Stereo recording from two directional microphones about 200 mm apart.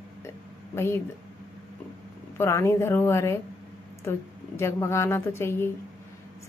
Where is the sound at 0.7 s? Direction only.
10° left (ahead or behind).